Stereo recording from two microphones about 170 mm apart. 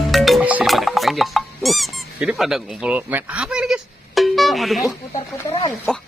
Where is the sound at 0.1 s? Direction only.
Centre (ahead or behind).